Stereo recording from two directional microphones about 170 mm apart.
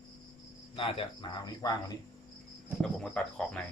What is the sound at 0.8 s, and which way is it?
Speech, 30° left (ahead or behind).